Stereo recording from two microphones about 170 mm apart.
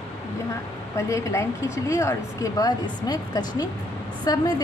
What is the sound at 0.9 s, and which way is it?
A woman's voice, 15° left (ahead or behind).